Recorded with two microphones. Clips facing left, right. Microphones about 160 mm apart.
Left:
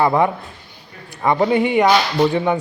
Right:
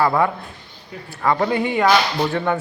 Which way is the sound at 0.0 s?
20° left (ahead or behind).